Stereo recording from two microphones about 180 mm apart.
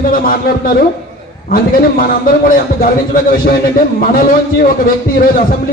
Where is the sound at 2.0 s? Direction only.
55° left (ahead or behind).